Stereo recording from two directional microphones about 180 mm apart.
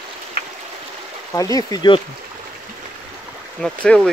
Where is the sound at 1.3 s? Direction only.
20° left (ahead or behind).